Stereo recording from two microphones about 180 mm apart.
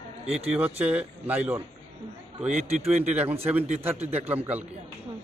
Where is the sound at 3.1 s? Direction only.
10° right (ahead or behind).